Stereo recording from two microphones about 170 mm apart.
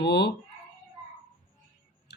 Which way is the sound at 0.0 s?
70° left (ahead or behind).